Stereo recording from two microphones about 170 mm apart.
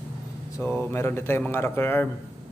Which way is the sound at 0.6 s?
15° left (ahead or behind).